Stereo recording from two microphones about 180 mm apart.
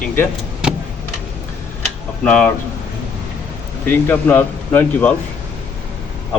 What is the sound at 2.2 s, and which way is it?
Speech, 5° left (ahead or behind).